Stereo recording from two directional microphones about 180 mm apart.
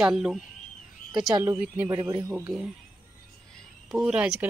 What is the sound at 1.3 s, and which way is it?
Speech, 20° right (ahead or behind).